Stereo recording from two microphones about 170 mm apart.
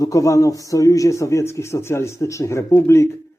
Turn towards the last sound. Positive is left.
turn(degrees=15)  # may be behind; listen again after turning